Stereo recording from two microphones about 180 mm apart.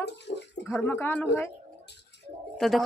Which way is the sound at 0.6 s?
10° left (ahead or behind).